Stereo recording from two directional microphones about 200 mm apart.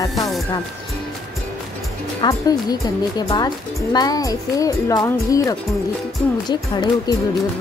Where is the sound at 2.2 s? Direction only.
20° left (ahead or behind).